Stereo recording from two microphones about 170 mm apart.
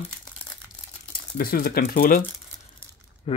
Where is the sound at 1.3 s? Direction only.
60° left (ahead or behind).